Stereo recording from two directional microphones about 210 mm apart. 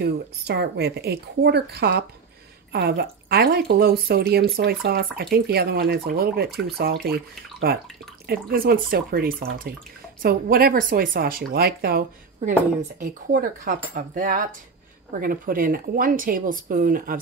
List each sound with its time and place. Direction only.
0.0 s speech: 50° right (ahead or behind)
13.3 s speech: 45° right (ahead or behind)